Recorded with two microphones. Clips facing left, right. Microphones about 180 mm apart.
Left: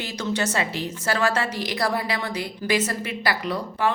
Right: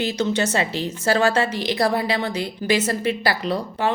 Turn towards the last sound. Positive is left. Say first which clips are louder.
# right 2 dB
turn(degrees=-25)  # may be behind; listen again after turning